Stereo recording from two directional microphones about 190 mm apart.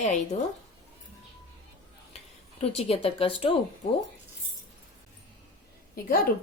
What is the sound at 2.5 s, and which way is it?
A woman's voice, 30° left (ahead or behind).